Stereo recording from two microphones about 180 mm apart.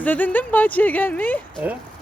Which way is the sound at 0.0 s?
10° left (ahead or behind).